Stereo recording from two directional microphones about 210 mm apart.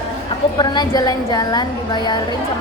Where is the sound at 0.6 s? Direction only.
20° left (ahead or behind).